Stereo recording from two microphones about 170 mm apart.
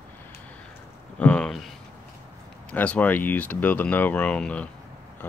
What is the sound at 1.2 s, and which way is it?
Speech, 5° left (ahead or behind).